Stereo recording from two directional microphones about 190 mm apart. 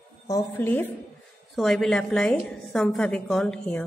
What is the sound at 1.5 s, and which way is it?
A woman's voice, centre (ahead or behind).